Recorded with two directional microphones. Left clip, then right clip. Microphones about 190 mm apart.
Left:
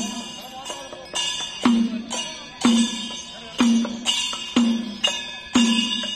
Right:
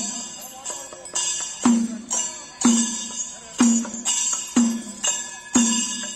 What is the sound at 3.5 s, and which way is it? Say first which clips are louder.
Music: even; 35° left (ahead or behind).